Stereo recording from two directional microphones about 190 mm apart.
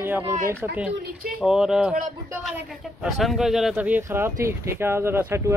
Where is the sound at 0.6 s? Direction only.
5° right (ahead or behind).